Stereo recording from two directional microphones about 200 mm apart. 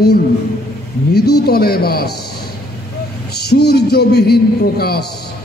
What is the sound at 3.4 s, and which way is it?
Speech, 55° left (ahead or behind).